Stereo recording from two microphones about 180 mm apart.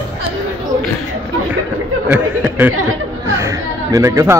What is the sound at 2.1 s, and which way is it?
Speech, 10° right (ahead or behind).